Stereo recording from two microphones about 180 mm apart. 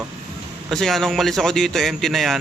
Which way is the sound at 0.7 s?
Centre (ahead or behind).